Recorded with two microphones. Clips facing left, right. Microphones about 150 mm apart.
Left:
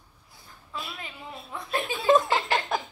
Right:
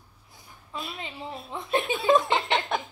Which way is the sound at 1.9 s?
Centre (ahead or behind).